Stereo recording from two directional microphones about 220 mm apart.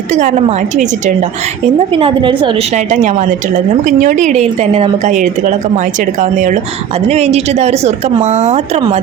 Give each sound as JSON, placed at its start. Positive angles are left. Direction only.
{"t": 0.1, "sound": "a woman's voice", "side_deg": -30}
{"t": 1.9, "sound": "a woman's voice", "side_deg": -25}